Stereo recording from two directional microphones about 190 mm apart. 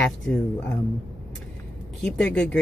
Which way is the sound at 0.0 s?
5° left (ahead or behind).